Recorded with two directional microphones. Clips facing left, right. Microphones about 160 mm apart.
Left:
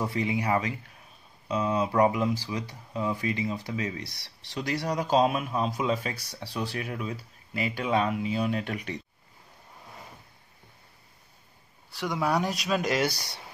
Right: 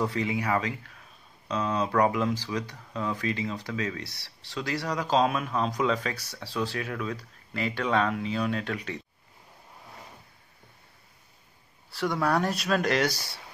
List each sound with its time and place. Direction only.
0.0 s speech: 15° left (ahead or behind)
11.9 s speech: centre (ahead or behind)
13.1 s speech: 15° left (ahead or behind)